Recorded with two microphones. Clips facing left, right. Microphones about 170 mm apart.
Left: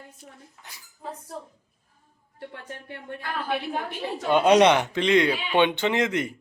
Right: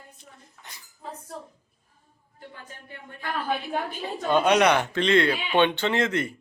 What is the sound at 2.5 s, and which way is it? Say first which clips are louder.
Speech: left 3 dB; 70° left (ahead or behind).